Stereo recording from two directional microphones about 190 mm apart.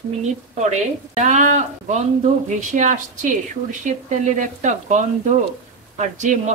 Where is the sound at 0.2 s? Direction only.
40° right (ahead or behind).